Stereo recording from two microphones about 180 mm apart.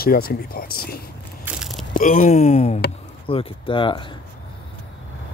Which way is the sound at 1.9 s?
45° left (ahead or behind).